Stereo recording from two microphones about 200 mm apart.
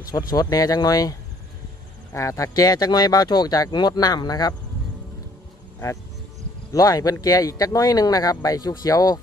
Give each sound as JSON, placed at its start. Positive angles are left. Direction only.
{"t": 0.1, "sound": "speech", "side_deg": 20}
{"t": 2.1, "sound": "speech", "side_deg": 15}
{"t": 6.7, "sound": "speech", "side_deg": 20}